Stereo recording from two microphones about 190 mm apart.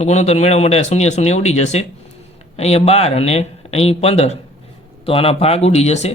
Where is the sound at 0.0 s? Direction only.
35° left (ahead or behind).